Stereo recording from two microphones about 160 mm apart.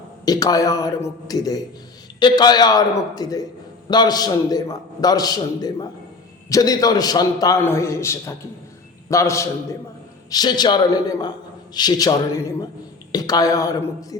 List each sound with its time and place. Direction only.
0.3 s a man's voice: 20° left (ahead or behind)